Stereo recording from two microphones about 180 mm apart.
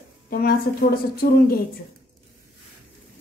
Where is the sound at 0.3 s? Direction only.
55° left (ahead or behind).